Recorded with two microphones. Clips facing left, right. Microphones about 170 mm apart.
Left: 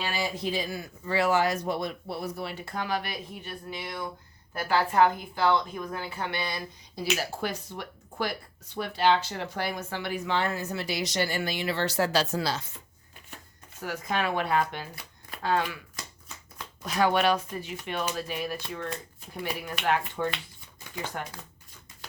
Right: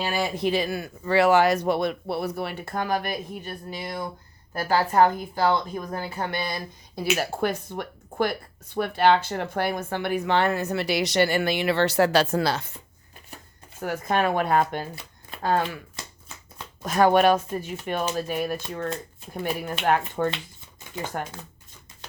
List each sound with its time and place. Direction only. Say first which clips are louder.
0.0 s speech: right 5 dB; 50° right (ahead or behind)
13.8 s speech: right 6 dB; 50° right (ahead or behind)
16.8 s speech: right 6 dB; 50° right (ahead or behind)